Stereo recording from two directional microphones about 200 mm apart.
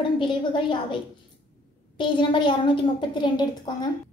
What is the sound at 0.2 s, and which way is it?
Speech, 25° left (ahead or behind).